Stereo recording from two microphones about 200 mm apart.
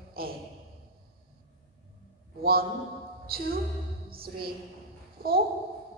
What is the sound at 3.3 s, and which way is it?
A woman's voice, 50° right (ahead or behind).